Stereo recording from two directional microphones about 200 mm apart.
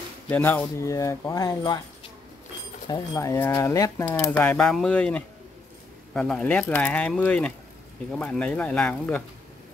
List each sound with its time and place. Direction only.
0.3 s speech: 10° left (ahead or behind)
2.9 s speech: 15° left (ahead or behind)